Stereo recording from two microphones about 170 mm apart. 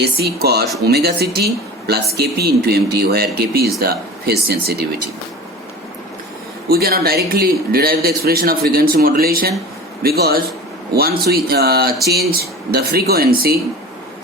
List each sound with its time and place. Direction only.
0.0 s speech: 70° right (ahead or behind)
6.7 s speech: 65° right (ahead or behind)